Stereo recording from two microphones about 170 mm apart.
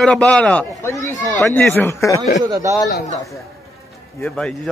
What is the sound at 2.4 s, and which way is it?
Speech, 20° right (ahead or behind).